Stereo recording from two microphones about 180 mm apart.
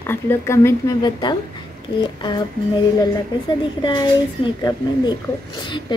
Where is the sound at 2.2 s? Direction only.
25° left (ahead or behind).